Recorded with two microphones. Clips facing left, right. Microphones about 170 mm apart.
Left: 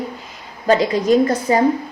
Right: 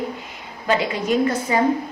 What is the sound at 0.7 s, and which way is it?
Speech, 40° left (ahead or behind).